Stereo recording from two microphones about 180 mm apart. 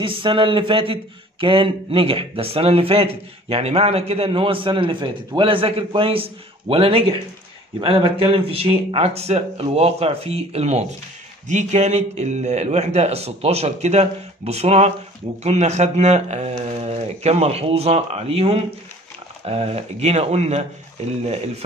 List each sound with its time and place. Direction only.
0.0 s a man's voice: 30° right (ahead or behind)